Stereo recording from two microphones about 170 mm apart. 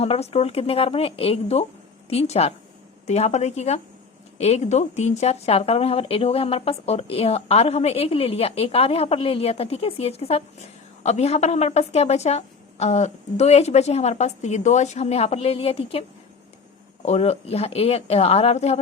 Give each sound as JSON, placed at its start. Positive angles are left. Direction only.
{"t": 0.0, "sound": "a woman's voice", "side_deg": 35}
{"t": 17.1, "sound": "a woman's voice", "side_deg": 40}